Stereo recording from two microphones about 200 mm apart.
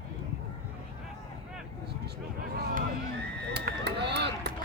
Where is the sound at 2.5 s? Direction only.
45° right (ahead or behind).